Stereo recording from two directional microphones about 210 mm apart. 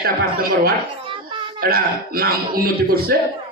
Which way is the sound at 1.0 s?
25° right (ahead or behind).